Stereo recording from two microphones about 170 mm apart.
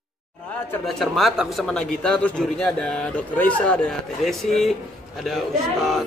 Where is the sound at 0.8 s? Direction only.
Centre (ahead or behind).